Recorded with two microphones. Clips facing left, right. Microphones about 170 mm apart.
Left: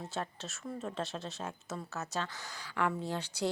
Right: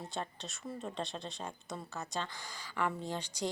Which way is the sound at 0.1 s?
Centre (ahead or behind).